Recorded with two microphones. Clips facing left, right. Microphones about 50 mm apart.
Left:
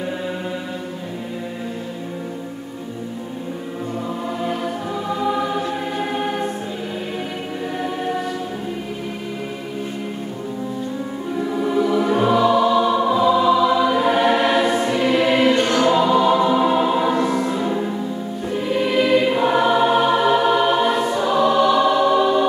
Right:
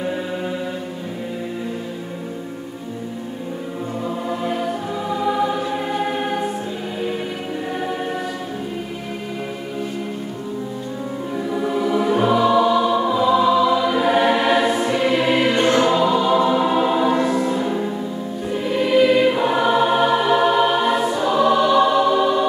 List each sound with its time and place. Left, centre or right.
5.1 s choir: centre
11.3 s music: centre
15.5 s choir: right
15.9 s choir: centre